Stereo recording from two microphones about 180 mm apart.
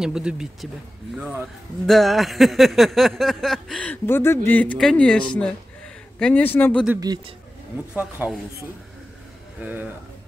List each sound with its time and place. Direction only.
0.0 s a sound: 5° right (ahead or behind)
1.2 s speech: 10° right (ahead or behind)
1.9 s a sound: centre (ahead or behind)
6.1 s speech: 5° left (ahead or behind)
7.0 s a man's voice: 20° right (ahead or behind)
7.9 s speech: 5° right (ahead or behind)
9.6 s speech: 10° right (ahead or behind)